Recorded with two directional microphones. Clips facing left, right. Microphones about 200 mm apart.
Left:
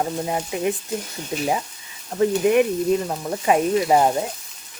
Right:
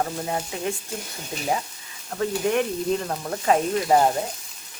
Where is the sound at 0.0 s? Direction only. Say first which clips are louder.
Left 3 dB; 15° left (ahead or behind).